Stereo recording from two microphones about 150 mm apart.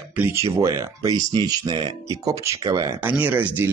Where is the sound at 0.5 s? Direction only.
20° right (ahead or behind).